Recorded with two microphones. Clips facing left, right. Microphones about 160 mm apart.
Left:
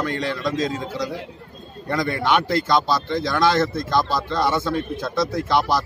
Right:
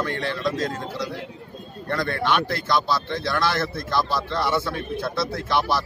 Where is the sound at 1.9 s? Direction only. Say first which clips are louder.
Left 3 dB; 10° left (ahead or behind).